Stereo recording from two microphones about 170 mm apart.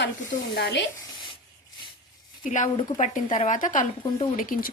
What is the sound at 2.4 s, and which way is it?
A woman's voice, 45° left (ahead or behind).